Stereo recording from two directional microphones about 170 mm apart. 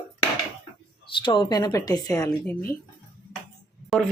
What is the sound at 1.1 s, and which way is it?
Speech, 30° left (ahead or behind).